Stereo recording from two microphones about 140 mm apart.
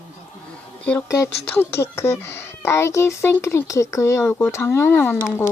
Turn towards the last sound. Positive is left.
turn(degrees=15)  # may be behind; listen again after turning